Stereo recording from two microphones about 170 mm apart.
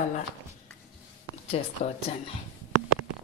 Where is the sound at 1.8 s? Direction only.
40° left (ahead or behind).